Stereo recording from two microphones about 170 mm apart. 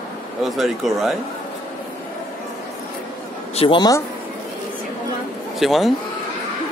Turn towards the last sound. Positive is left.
turn(degrees=0)  # may be behind; listen again after turning